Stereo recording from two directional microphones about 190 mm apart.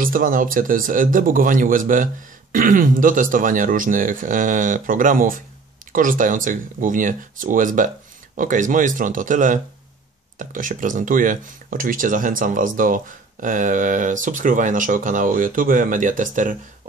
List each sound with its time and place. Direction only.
0.0 s speech: 45° right (ahead or behind)